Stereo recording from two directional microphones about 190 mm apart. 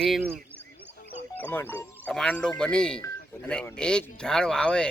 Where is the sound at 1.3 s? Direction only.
10° left (ahead or behind).